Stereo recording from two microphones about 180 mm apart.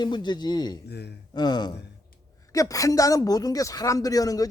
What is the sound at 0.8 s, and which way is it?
Speech, 65° left (ahead or behind).